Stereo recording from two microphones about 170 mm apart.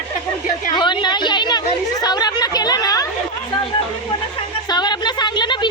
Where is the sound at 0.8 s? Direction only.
25° left (ahead or behind).